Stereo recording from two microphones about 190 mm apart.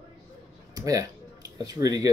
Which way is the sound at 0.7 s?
20° right (ahead or behind).